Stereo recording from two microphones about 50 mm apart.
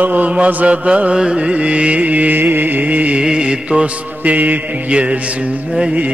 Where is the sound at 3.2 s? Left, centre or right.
Centre.